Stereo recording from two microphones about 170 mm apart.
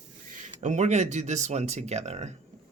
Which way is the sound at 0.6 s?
45° right (ahead or behind).